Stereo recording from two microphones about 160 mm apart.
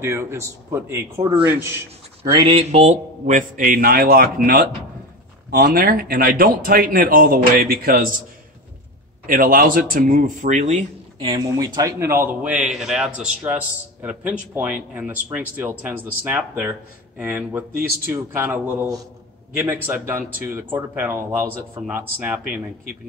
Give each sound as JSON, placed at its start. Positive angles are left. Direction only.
{"t": 0.0, "sound": "speech", "side_deg": -15}
{"t": 2.2, "sound": "speech", "side_deg": -25}
{"t": 2.5, "sound": "a man's voice", "side_deg": -40}
{"t": 9.2, "sound": "a man's voice", "side_deg": -60}
{"t": 11.3, "sound": "speech", "side_deg": -25}